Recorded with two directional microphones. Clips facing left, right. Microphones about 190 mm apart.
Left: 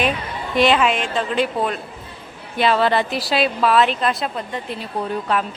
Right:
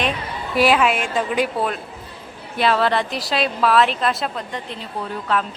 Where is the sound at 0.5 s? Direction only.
5° right (ahead or behind).